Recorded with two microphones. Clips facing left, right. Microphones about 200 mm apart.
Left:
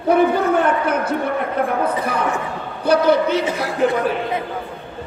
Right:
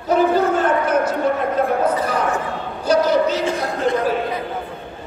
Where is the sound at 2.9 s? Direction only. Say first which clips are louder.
Left 1 dB; 60° left (ahead or behind).